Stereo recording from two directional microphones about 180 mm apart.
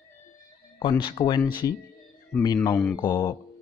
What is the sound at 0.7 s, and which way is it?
Speech, 30° left (ahead or behind).